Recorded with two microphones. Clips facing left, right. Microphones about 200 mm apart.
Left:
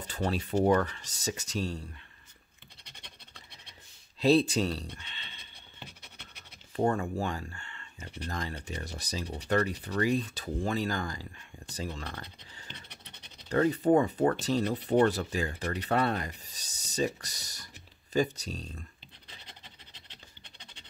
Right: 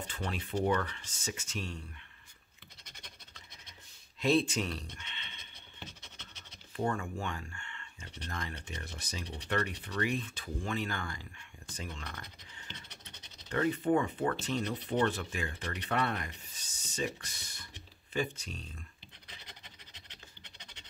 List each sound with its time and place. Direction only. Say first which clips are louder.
0.0 s speech: left 7 dB; 35° left (ahead or behind)
4.2 s speech: left 5 dB; 35° left (ahead or behind)
4.9 s a sound: left 2 dB; 35° left (ahead or behind)
6.8 s speech: left 6 dB; 35° left (ahead or behind)
12.9 s scratch: left 1 dB; 60° left (ahead or behind)
13.5 s speech: left 5 dB; 35° left (ahead or behind)